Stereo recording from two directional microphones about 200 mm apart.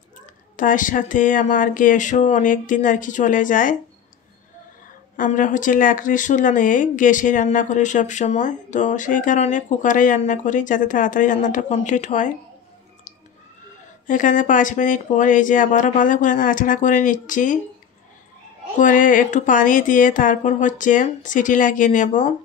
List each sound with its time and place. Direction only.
0.6 s speech: 40° left (ahead or behind)
5.1 s speech: 40° left (ahead or behind)
14.0 s speech: 40° left (ahead or behind)
18.8 s speech: 40° left (ahead or behind)